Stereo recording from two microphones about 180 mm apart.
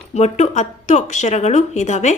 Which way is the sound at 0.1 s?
40° left (ahead or behind).